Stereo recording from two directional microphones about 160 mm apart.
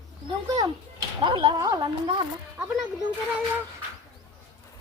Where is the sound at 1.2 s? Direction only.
30° right (ahead or behind).